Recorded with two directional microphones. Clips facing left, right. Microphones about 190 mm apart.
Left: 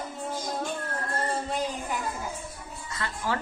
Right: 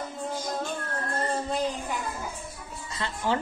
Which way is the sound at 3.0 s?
20° right (ahead or behind).